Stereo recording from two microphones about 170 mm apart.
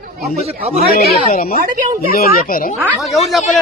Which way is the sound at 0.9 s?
65° left (ahead or behind).